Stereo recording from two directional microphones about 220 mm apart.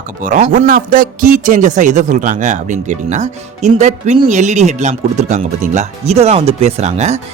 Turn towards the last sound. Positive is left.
turn(degrees=-30)  # may be behind; listen again after turning